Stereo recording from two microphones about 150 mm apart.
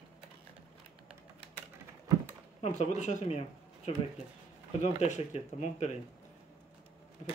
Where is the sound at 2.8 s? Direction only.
50° left (ahead or behind).